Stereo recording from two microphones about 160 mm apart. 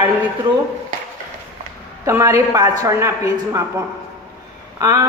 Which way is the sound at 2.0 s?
15° right (ahead or behind).